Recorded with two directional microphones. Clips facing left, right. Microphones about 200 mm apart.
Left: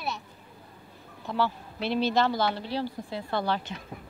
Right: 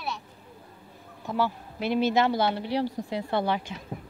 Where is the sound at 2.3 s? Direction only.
25° right (ahead or behind).